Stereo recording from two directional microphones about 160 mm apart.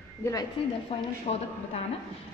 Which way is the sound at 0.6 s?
35° left (ahead or behind).